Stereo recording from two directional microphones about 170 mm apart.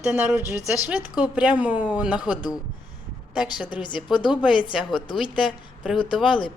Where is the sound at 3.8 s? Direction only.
25° left (ahead or behind).